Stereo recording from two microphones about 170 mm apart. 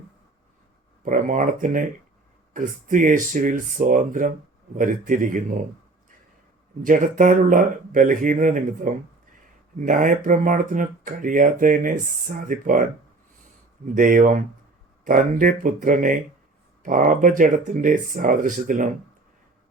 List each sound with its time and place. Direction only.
1.0 s speech: 50° right (ahead or behind)
6.8 s speech: 50° right (ahead or behind)